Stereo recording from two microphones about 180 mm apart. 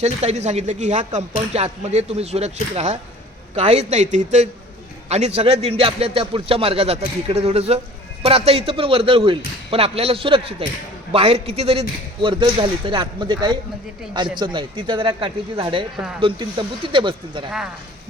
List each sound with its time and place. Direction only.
0.0 s a man's voice: 35° right (ahead or behind)